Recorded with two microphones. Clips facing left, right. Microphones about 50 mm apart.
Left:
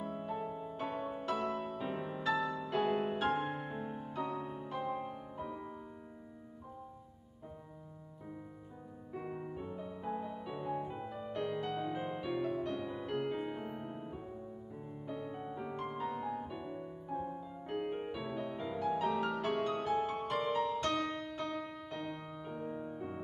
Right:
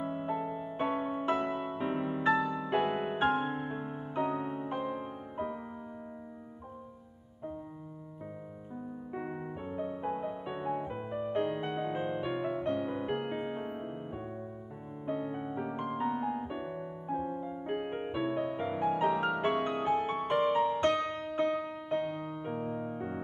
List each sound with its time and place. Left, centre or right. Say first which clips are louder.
0.0 s music: right 5 dB; right
4.1 s music: right 8 dB; right
9.1 s music: right 2 dB; right